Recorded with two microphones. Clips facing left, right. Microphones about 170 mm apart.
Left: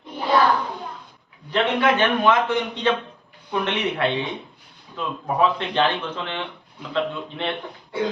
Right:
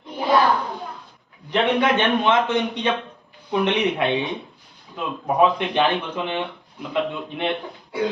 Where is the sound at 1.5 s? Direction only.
20° right (ahead or behind).